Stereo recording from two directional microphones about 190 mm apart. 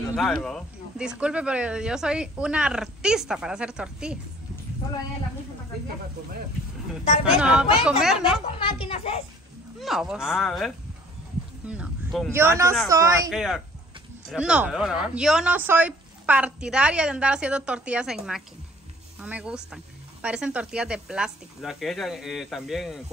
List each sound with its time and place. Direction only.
0.1 s speech: centre (ahead or behind)
7.2 s speech: 5° right (ahead or behind)
8.8 s a child's voice: 30° left (ahead or behind)
9.8 s speech: centre (ahead or behind)
12.3 s speech: 15° right (ahead or behind)
13.3 s speech: 5° right (ahead or behind)